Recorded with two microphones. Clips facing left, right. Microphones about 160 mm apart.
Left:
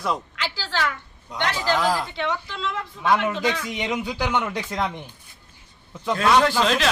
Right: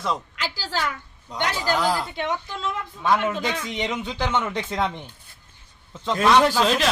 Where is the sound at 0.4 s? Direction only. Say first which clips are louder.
Right 1 dB; 40° right (ahead or behind).